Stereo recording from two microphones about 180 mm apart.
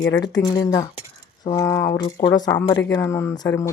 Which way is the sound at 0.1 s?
20° left (ahead or behind).